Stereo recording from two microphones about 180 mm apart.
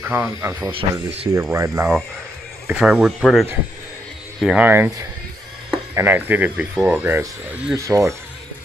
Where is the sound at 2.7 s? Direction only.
5° right (ahead or behind).